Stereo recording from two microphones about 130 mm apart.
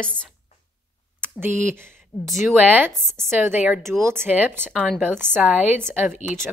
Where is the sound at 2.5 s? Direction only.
15° right (ahead or behind).